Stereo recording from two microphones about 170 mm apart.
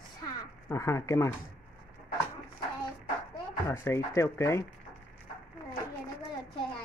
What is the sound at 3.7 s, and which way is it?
Speech, 15° left (ahead or behind).